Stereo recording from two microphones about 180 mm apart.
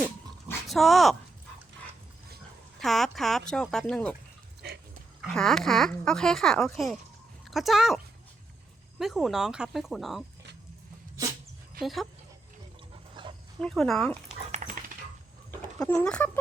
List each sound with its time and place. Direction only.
0.7 s speech: centre (ahead or behind)
2.8 s speech: centre (ahead or behind)
5.2 s speech: 5° left (ahead or behind)
11.8 s speech: centre (ahead or behind)
13.2 s dog: 25° right (ahead or behind)
13.6 s speech: 5° left (ahead or behind)
14.5 s dog: 45° right (ahead or behind)
15.8 s speech: 5° left (ahead or behind)